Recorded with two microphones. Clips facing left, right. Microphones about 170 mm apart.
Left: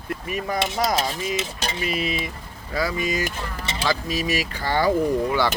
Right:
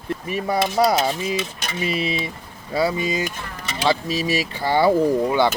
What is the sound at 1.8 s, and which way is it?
Speech, 30° right (ahead or behind).